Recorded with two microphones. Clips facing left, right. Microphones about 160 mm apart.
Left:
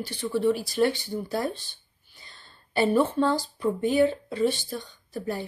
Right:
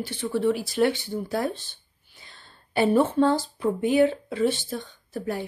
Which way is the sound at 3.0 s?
20° right (ahead or behind).